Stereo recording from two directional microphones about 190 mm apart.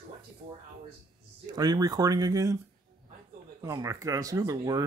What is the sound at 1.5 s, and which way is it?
Speech, 20° right (ahead or behind).